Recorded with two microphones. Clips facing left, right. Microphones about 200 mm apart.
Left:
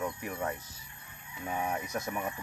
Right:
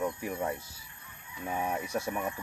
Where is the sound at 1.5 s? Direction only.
10° right (ahead or behind).